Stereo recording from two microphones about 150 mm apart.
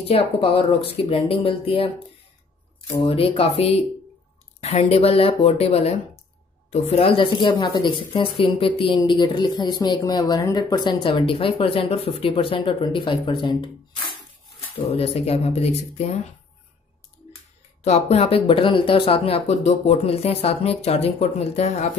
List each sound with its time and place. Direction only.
0.1 s speech: 40° left (ahead or behind)
3.0 s speech: 40° left (ahead or behind)
14.8 s speech: 40° left (ahead or behind)
17.8 s speech: 45° left (ahead or behind)